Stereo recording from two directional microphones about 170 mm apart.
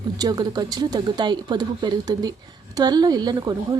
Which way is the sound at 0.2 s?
25° right (ahead or behind).